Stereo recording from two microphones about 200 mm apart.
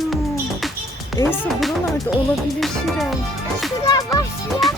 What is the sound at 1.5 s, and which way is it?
Music, centre (ahead or behind).